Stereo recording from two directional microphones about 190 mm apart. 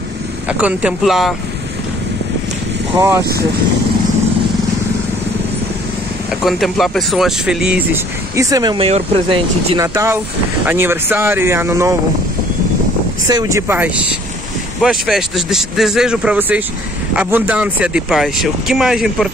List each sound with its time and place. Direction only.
0.5 s speech: 5° right (ahead or behind)
3.0 s speech: 15° right (ahead or behind)
6.4 s speech: centre (ahead or behind)
8.4 s speech: 20° right (ahead or behind)
8.7 s speech: 30° right (ahead or behind)
9.8 s speech: 15° right (ahead or behind)
13.3 s speech: 20° right (ahead or behind); by 19.2 s centre (ahead or behind)